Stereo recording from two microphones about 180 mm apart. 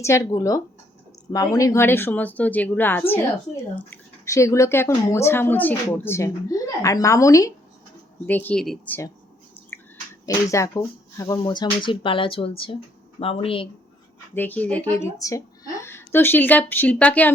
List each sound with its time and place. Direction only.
0.0 s speech: 15° left (ahead or behind)
10.2 s speech: 15° left (ahead or behind)
14.3 s speech: 10° left (ahead or behind)